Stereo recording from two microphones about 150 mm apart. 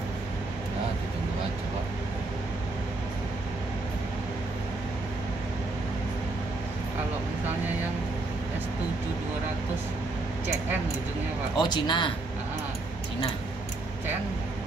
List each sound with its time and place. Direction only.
11.5 s speech: 30° left (ahead or behind)